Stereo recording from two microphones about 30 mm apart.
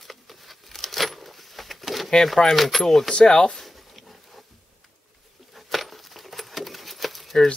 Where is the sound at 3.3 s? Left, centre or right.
Left.